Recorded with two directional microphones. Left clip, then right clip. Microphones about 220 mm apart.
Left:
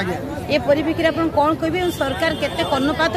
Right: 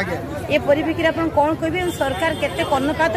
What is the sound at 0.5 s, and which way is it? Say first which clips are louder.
Speech: even; 15° left (ahead or behind).